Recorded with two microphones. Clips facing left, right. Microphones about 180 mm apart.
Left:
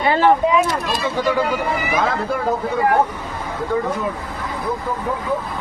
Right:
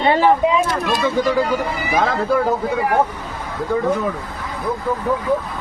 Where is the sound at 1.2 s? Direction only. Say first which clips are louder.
Right 1 dB; 40° right (ahead or behind).